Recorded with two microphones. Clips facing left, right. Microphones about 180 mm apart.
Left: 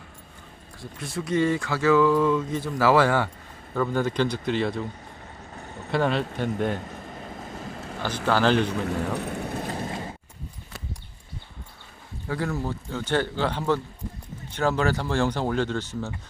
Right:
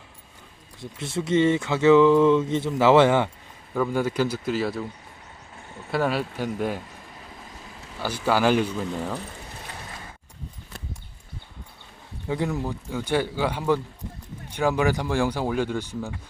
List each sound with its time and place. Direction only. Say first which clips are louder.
0.8 s speech: right 3 dB; 25° right (ahead or behind)
3.8 s a man's voice: right 1 dB; 10° right (ahead or behind)
5.9 s a man's voice: even; 5° right (ahead or behind)
7.5 s vehicle: left 8 dB; 55° left (ahead or behind)
8.0 s speech: right 1 dB; 10° right (ahead or behind)
8.6 s speech: left 2 dB; 70° left (ahead or behind)
9.6 s mechanisms: left 9 dB; 40° left (ahead or behind)
12.3 s speech: right 2 dB; 15° right (ahead or behind)